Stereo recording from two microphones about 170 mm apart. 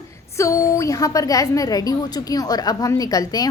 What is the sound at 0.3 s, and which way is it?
A woman's voice, 15° left (ahead or behind).